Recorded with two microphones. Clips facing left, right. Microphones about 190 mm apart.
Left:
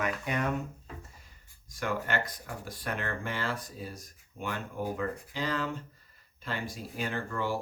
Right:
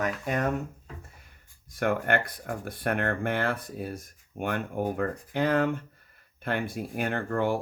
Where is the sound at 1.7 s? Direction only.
55° right (ahead or behind).